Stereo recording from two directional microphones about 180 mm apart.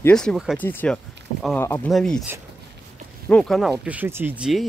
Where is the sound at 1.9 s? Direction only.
Centre (ahead or behind).